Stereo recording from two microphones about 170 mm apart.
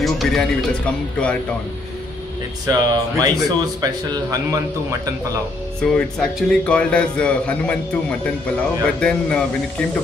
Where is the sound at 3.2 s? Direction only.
25° right (ahead or behind).